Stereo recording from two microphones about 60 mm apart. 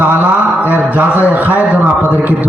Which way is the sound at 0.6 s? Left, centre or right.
Right.